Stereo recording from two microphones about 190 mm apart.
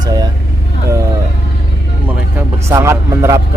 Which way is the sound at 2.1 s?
10° right (ahead or behind).